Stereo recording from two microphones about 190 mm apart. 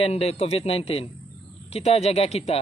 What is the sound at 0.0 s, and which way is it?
Speech, 35° left (ahead or behind).